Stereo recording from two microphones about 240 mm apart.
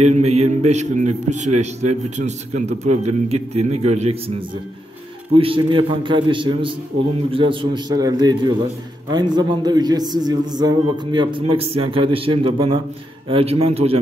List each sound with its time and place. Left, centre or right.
0.0 s a man's voice: right
5.3 s a man's voice: right